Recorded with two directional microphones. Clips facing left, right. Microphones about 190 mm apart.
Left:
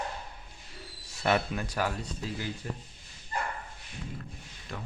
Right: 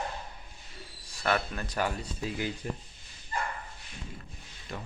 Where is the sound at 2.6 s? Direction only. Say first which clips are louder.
Right 2 dB; 15° right (ahead or behind).